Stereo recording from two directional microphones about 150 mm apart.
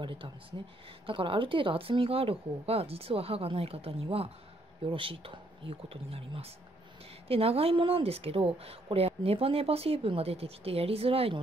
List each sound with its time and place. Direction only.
0.0 s speech: 35° right (ahead or behind)